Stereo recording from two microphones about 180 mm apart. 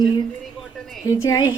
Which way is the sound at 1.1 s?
20° left (ahead or behind).